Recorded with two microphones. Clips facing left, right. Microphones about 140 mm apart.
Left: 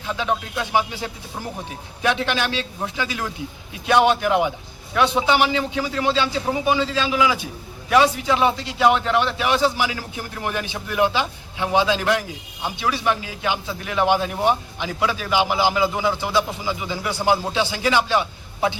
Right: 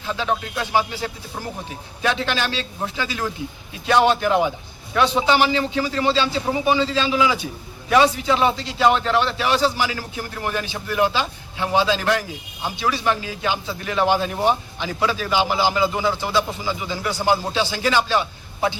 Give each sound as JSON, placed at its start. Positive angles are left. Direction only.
{"t": 0.1, "sound": "a man's voice", "side_deg": 10}